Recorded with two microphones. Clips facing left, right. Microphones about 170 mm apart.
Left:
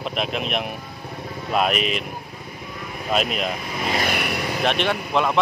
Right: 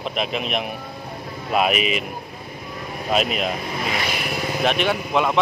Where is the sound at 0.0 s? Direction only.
Centre (ahead or behind).